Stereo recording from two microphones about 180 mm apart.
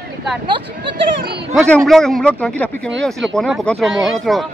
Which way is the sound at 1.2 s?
65° right (ahead or behind).